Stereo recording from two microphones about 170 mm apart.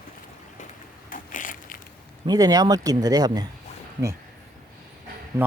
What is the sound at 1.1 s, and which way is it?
Crushing, 50° left (ahead or behind).